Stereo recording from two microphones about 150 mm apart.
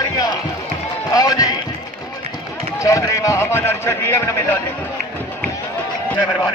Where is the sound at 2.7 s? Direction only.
20° left (ahead or behind).